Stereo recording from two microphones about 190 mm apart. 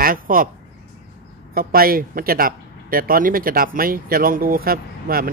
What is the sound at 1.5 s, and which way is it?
Speech, 50° right (ahead or behind).